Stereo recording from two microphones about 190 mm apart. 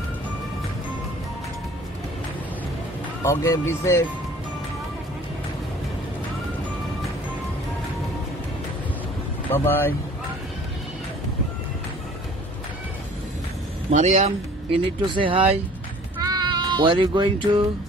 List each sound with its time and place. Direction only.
3.3 s speech: 15° left (ahead or behind)
9.5 s speech: 10° left (ahead or behind)
13.8 s speech: 35° right (ahead or behind)
15.0 s speech: 25° right (ahead or behind)
16.2 s cat: 25° right (ahead or behind)